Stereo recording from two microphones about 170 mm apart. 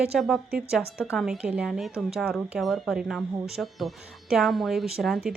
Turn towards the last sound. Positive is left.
turn(degrees=0)  # may be behind; listen again after turning